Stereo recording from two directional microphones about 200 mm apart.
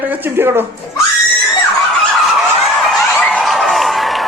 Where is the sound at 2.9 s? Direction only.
5° left (ahead or behind).